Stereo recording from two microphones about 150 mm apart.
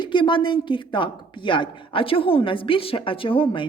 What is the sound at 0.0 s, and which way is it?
A woman's voice, 30° left (ahead or behind).